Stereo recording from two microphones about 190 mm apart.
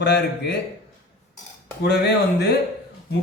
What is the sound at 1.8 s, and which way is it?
Speech, 60° left (ahead or behind).